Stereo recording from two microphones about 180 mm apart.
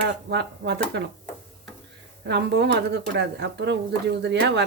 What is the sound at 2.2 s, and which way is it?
Speech, 70° right (ahead or behind).